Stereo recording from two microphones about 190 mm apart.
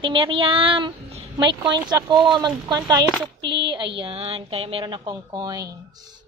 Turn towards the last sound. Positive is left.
turn(degrees=-20)  # may be behind; listen again after turning